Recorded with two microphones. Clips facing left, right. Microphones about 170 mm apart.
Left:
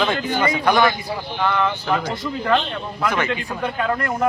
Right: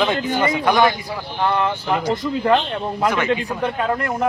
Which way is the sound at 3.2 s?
15° right (ahead or behind).